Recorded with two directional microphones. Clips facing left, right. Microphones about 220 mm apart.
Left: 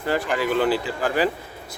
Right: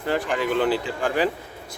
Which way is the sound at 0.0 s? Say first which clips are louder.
Left 1 dB; 5° left (ahead or behind).